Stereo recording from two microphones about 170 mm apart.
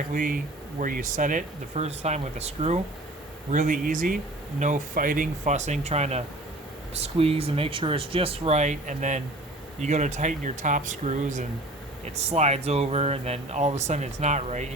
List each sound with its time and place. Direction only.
0.1 s speech: 55° right (ahead or behind)
3.5 s speech: 50° right (ahead or behind)